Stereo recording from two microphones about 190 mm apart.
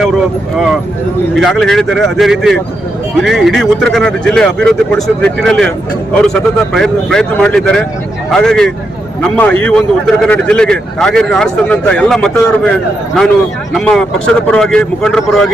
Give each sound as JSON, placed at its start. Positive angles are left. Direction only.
{"t": 1.4, "sound": "a man's voice", "side_deg": 0}
{"t": 13.7, "sound": "a man's voice", "side_deg": 5}